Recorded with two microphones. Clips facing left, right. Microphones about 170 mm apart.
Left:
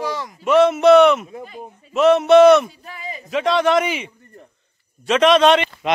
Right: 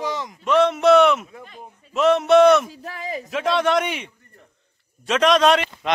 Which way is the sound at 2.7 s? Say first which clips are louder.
Right 3 dB; 90° right.